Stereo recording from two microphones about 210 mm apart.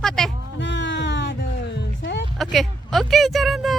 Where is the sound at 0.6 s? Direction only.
60° left (ahead or behind).